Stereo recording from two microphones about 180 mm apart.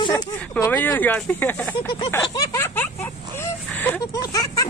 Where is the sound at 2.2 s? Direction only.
20° left (ahead or behind).